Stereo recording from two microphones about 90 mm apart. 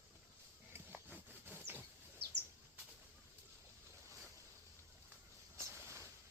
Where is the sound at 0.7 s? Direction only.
25° right (ahead or behind).